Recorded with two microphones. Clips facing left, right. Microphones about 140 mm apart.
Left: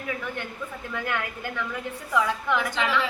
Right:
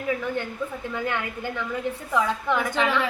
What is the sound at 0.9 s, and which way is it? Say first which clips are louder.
A woman's voice: right 1 dB; 25° right (ahead or behind).